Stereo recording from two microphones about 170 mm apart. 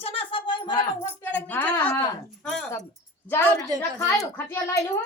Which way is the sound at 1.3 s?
10° left (ahead or behind).